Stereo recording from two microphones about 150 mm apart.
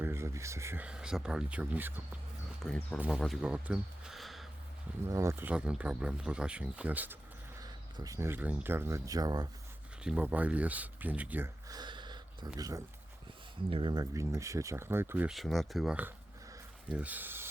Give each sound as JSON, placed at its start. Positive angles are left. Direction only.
{"t": 0.0, "sound": "speech", "side_deg": -15}
{"t": 2.6, "sound": "speech", "side_deg": 5}
{"t": 5.0, "sound": "speech", "side_deg": -20}
{"t": 7.6, "sound": "speech", "side_deg": -25}
{"t": 10.0, "sound": "speech", "side_deg": -10}
{"t": 11.7, "sound": "a sound", "side_deg": -30}
{"t": 12.5, "sound": "speech", "side_deg": -25}
{"t": 13.7, "sound": "speech", "side_deg": -35}
{"t": 15.3, "sound": "speech", "side_deg": 0}